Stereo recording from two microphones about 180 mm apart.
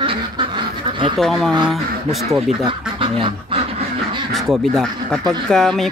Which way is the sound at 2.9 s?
30° right (ahead or behind).